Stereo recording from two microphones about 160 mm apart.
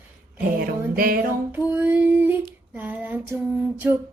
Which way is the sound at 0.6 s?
65° right (ahead or behind).